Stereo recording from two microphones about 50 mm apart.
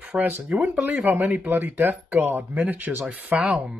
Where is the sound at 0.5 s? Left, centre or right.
Centre.